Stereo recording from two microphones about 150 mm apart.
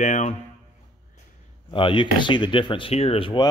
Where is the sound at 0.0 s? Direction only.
55° left (ahead or behind).